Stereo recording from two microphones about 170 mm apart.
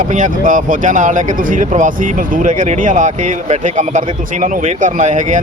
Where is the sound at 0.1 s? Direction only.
50° right (ahead or behind).